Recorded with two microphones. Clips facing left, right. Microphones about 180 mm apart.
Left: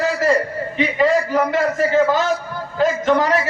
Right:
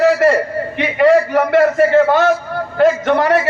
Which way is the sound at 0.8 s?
65° right (ahead or behind).